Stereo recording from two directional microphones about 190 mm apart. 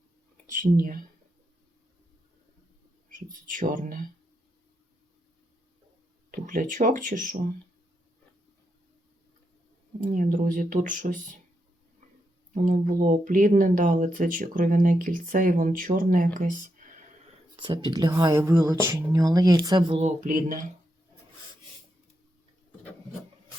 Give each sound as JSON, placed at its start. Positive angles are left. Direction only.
{"t": 0.5, "sound": "speech", "side_deg": -45}
{"t": 3.5, "sound": "speech", "side_deg": -45}
{"t": 6.4, "sound": "speech", "side_deg": -45}
{"t": 10.0, "sound": "speech", "side_deg": -45}
{"t": 12.5, "sound": "speech", "side_deg": -40}
{"t": 17.6, "sound": "speech", "side_deg": -25}
{"t": 20.0, "sound": "speech", "side_deg": -40}